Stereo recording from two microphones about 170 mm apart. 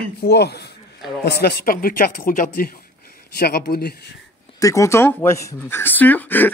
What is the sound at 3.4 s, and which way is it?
Speech, 70° left (ahead or behind).